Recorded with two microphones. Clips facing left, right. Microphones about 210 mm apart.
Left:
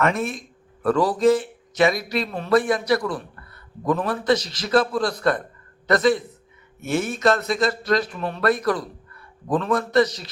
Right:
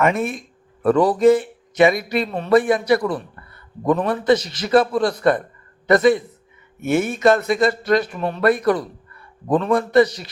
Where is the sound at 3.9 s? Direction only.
Centre (ahead or behind).